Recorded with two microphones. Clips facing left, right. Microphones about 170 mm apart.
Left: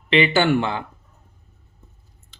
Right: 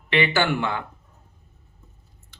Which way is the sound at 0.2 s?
30° left (ahead or behind).